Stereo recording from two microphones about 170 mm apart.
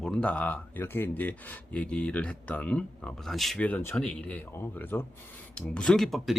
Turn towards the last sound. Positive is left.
turn(degrees=0)  # may be behind; listen again after turning